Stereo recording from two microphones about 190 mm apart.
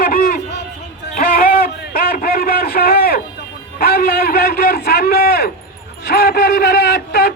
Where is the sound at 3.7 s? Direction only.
50° left (ahead or behind).